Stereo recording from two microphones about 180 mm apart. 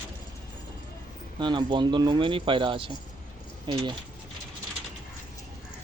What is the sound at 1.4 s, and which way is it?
Speech, 25° right (ahead or behind).